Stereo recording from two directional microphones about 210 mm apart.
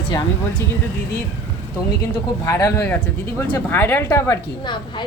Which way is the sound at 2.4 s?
15° left (ahead or behind).